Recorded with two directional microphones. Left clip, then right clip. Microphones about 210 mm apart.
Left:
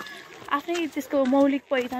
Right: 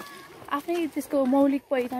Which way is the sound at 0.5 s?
10° left (ahead or behind).